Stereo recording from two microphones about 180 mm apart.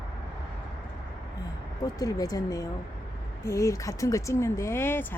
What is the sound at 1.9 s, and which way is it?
Speech, 20° left (ahead or behind).